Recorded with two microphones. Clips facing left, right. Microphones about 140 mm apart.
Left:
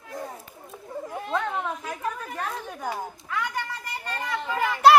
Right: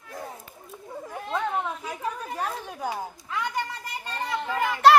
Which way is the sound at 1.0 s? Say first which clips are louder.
Even; centre (ahead or behind).